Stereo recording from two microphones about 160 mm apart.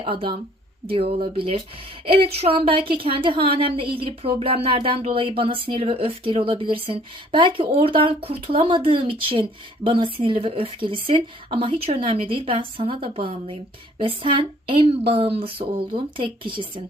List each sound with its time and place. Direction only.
0.0 s a woman's voice: 35° right (ahead or behind)